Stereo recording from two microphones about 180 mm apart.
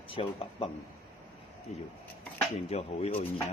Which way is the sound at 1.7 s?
40° left (ahead or behind).